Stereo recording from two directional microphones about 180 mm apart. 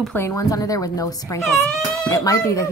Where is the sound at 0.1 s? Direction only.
15° left (ahead or behind).